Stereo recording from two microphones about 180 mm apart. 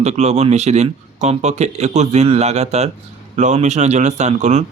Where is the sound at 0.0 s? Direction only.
40° right (ahead or behind).